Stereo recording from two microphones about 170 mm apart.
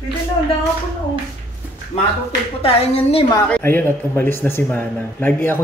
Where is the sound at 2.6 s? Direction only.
35° left (ahead or behind).